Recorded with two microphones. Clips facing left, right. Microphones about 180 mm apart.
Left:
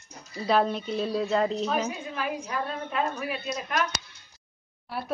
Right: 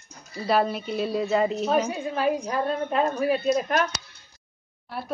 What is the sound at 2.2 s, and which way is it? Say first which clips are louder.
A woman's voice: right 8 dB; 35° right (ahead or behind).